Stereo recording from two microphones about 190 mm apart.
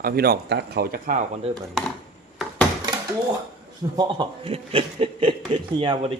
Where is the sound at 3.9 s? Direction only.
25° right (ahead or behind).